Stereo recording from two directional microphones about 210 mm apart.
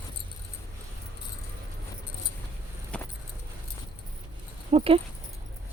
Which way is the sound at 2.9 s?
5° left (ahead or behind).